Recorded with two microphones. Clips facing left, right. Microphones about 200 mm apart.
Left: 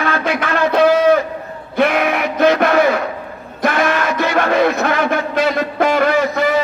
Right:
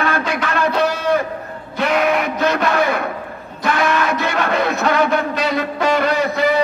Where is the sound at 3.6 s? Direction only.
55° left (ahead or behind).